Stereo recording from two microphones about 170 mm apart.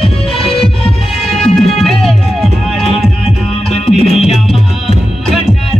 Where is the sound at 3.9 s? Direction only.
Centre (ahead or behind).